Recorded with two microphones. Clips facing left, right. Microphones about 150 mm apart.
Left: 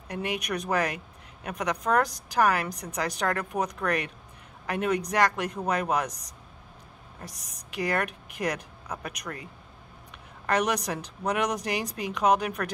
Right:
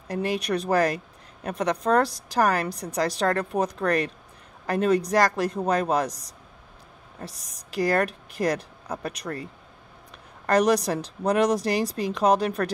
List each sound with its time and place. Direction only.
0.1 s speech: 35° right (ahead or behind)
10.5 s speech: 35° right (ahead or behind)